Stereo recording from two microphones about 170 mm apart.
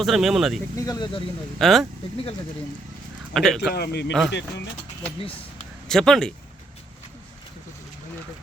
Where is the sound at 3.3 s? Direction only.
Centre (ahead or behind).